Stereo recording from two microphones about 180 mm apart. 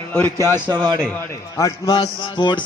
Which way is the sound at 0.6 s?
25° right (ahead or behind).